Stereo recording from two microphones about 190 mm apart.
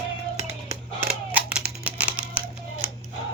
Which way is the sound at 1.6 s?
5° right (ahead or behind).